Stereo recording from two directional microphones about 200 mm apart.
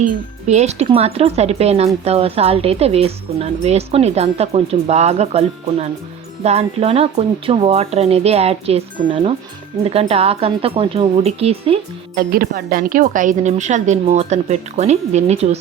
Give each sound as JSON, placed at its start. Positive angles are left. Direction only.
{"t": 0.0, "sound": "speech", "side_deg": -35}
{"t": 12.1, "sound": "speech", "side_deg": -45}